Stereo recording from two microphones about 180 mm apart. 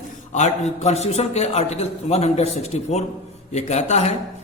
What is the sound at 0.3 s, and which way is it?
A man's voice, 40° left (ahead or behind).